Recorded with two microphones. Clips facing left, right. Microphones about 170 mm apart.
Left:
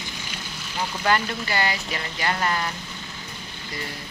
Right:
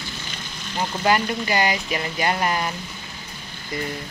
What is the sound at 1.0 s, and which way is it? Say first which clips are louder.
Speech: right 3 dB; 15° right (ahead or behind).